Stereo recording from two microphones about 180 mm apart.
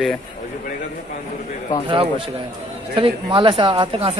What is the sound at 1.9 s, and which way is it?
Speech, 30° right (ahead or behind).